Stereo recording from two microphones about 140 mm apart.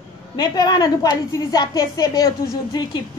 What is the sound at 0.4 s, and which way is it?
A woman's voice, 30° left (ahead or behind).